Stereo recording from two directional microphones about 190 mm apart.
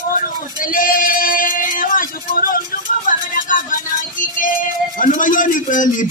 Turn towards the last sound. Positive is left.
turn(degrees=45)  # may be behind; listen again after turning